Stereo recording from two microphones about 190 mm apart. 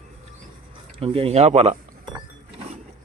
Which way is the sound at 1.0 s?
30° right (ahead or behind).